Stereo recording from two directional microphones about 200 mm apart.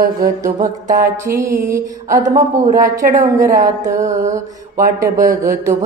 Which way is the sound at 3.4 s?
15° right (ahead or behind).